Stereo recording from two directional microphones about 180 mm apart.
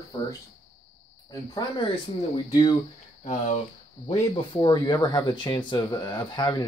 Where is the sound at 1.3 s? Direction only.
25° left (ahead or behind).